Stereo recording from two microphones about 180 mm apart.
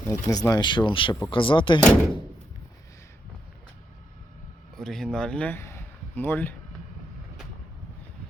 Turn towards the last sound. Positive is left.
turn(degrees=10)  # may be behind; listen again after turning